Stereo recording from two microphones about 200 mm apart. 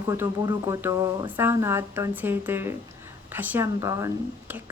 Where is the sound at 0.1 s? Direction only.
15° right (ahead or behind).